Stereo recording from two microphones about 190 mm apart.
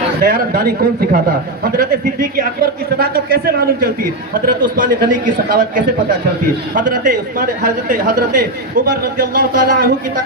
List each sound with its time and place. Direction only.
0.2 s a man's voice: 50° right (ahead or behind)
1.7 s a man's voice: 50° right (ahead or behind)